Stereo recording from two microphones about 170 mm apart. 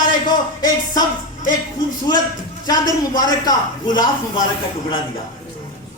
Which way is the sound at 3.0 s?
20° left (ahead or behind).